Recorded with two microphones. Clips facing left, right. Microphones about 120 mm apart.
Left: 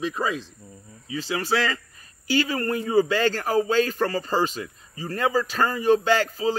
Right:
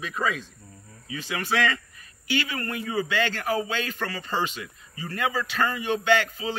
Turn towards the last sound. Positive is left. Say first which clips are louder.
# left 2 dB
turn(degrees=35)  # may be behind; listen again after turning